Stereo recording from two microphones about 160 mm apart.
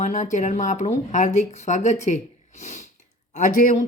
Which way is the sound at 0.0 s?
50° left (ahead or behind).